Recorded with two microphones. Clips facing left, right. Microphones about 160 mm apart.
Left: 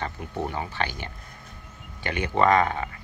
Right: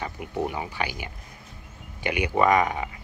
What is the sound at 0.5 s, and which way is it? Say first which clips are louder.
Speech: even; 15° right (ahead or behind).